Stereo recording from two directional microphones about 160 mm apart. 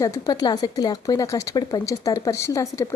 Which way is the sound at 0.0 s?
20° left (ahead or behind).